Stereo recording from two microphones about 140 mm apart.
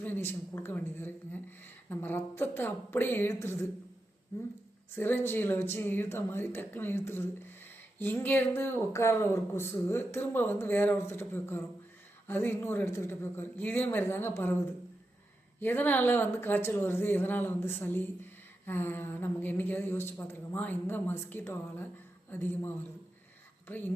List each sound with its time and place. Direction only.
0.0 s speech: 15° left (ahead or behind)
4.9 s speech: 15° left (ahead or behind)
15.6 s speech: 15° left (ahead or behind)